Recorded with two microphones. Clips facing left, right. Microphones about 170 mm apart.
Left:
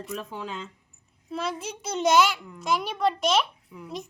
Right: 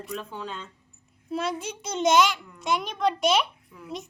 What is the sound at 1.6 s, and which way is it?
A child's voice, 5° left (ahead or behind).